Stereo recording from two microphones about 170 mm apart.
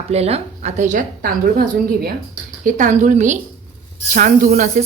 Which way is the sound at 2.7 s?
50° right (ahead or behind).